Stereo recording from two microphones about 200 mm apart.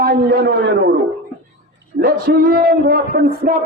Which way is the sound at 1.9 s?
45° right (ahead or behind).